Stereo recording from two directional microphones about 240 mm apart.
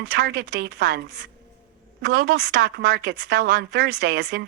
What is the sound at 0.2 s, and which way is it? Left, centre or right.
A woman's voice, right.